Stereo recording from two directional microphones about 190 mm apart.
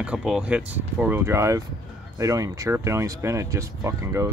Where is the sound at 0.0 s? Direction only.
5° right (ahead or behind).